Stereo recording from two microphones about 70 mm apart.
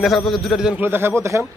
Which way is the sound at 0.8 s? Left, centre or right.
Right.